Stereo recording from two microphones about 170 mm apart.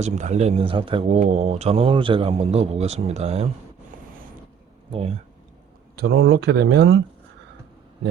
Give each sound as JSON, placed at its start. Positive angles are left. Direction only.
{"t": 0.0, "sound": "a man's voice", "side_deg": -40}
{"t": 1.1, "sound": "a man's voice", "side_deg": -40}
{"t": 4.9, "sound": "a man's voice", "side_deg": -35}
{"t": 6.0, "sound": "speech", "side_deg": -75}